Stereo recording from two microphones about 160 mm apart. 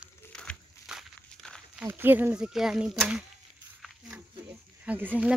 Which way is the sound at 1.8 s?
10° right (ahead or behind).